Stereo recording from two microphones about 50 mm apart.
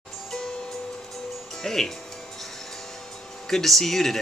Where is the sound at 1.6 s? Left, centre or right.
Centre.